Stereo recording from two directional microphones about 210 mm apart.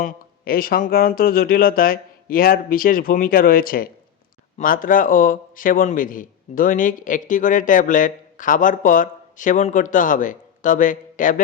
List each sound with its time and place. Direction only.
0.0 s a man's voice: 45° left (ahead or behind)